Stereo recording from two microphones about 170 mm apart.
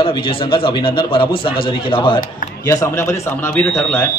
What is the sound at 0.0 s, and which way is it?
Speech, 30° left (ahead or behind).